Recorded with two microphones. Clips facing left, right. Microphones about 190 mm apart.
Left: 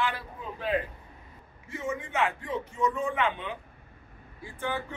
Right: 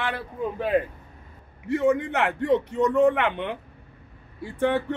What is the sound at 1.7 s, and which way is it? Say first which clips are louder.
A man's voice: right 12 dB; 65° right (ahead or behind).